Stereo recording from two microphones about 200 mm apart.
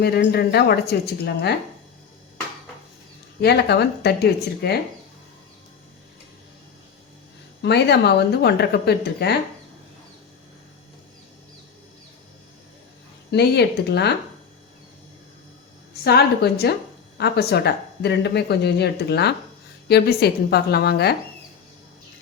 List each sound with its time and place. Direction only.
0.0 s a woman's voice: 55° left (ahead or behind)
3.4 s speech: 55° left (ahead or behind)
7.6 s speech: 55° left (ahead or behind)
13.3 s speech: 55° left (ahead or behind)
16.0 s a woman's voice: 55° left (ahead or behind)